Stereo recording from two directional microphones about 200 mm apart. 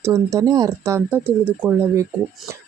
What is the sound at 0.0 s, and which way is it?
Speech, 15° right (ahead or behind).